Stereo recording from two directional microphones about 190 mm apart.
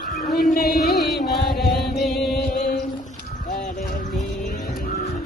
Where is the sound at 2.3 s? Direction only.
50° left (ahead or behind).